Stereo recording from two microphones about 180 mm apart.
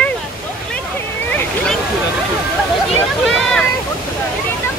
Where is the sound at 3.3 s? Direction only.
5° left (ahead or behind).